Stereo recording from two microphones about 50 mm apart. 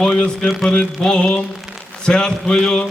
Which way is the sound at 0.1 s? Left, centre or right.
Left.